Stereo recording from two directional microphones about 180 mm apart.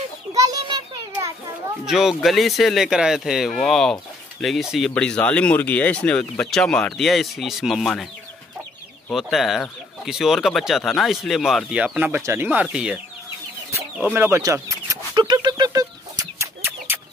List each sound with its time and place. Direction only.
0.3 s children playing: 20° right (ahead or behind)
1.9 s speech: centre (ahead or behind)
9.1 s speech: centre (ahead or behind)
14.1 s a sound: 15° right (ahead or behind)